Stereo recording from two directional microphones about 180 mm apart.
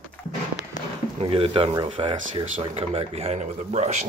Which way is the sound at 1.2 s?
30° right (ahead or behind).